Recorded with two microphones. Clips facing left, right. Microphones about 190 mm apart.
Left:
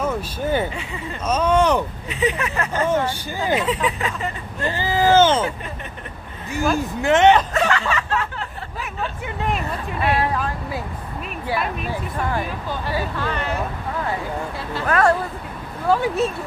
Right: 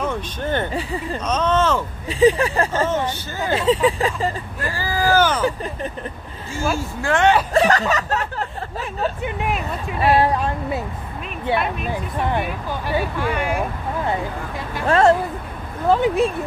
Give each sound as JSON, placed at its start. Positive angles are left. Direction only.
{"t": 0.0, "sound": "speech", "side_deg": 10}
{"t": 2.0, "sound": "vehicle", "side_deg": -35}
{"t": 3.1, "sound": "speech", "side_deg": 15}
{"t": 3.5, "sound": "speech", "side_deg": -25}
{"t": 4.6, "sound": "speech", "side_deg": 20}
{"t": 6.8, "sound": "speech", "side_deg": 20}
{"t": 7.5, "sound": "snicker", "side_deg": -35}
{"t": 9.5, "sound": "speech", "side_deg": 0}
{"t": 10.1, "sound": "speech", "side_deg": -30}
{"t": 11.5, "sound": "speech", "side_deg": 0}
{"t": 11.9, "sound": "speech", "side_deg": -20}
{"t": 14.9, "sound": "speech", "side_deg": -25}